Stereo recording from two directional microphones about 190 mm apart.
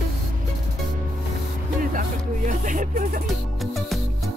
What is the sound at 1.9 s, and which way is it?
Music, 40° right (ahead or behind).